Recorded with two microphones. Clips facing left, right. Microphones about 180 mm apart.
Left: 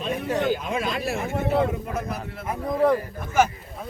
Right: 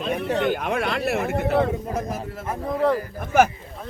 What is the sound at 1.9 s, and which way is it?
Speech, 40° right (ahead or behind).